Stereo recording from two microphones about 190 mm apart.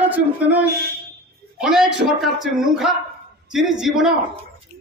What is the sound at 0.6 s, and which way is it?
Speech, 55° right (ahead or behind).